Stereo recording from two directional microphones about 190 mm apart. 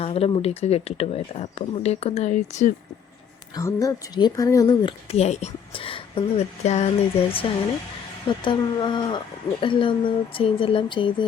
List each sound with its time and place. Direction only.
0.0 s speech: 30° left (ahead or behind)
3.5 s speech: 15° left (ahead or behind)